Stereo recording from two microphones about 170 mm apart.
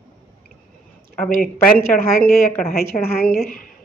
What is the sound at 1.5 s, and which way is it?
Speech, 5° left (ahead or behind).